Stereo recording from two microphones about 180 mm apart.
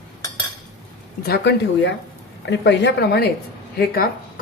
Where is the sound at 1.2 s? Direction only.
65° left (ahead or behind).